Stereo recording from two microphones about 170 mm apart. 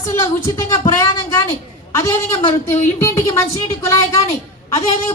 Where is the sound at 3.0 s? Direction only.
20° left (ahead or behind).